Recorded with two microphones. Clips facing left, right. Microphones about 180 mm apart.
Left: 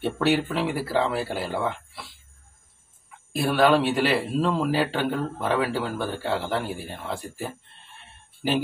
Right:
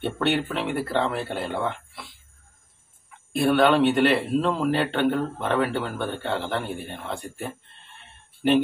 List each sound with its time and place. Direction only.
0.0 s a man's voice: 5° left (ahead or behind)
3.3 s a man's voice: centre (ahead or behind)